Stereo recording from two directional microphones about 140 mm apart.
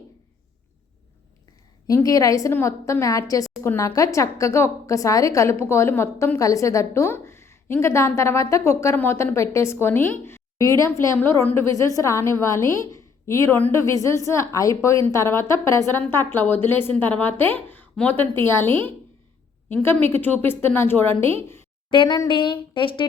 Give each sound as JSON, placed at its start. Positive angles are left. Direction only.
{"t": 1.9, "sound": "a woman's voice", "side_deg": 25}
{"t": 21.8, "sound": "speech", "side_deg": 35}